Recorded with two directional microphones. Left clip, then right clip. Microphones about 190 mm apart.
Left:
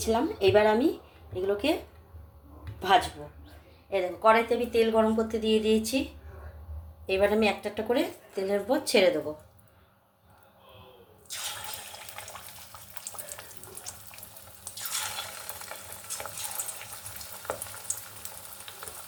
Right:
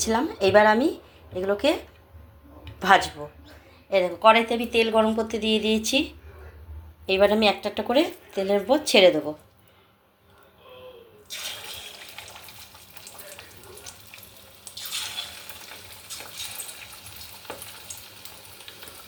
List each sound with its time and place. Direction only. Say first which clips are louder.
0.0 s speech: right 2 dB; 15° right (ahead or behind)
2.7 s a woman's voice: right 5 dB; 15° right (ahead or behind)
7.1 s a woman's voice: right 5 dB; 25° right (ahead or behind)